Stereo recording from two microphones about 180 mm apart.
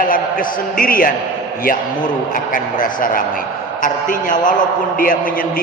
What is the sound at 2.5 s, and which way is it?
A man's voice, 50° left (ahead or behind).